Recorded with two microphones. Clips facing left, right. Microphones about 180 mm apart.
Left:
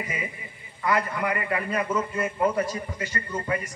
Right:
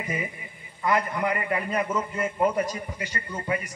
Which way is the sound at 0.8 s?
25° right (ahead or behind).